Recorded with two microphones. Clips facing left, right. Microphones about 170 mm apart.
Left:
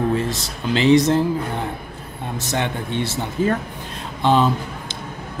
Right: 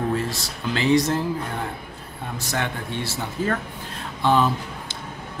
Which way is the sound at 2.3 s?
20° left (ahead or behind).